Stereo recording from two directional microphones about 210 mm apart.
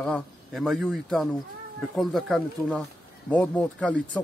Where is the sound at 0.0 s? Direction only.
Centre (ahead or behind).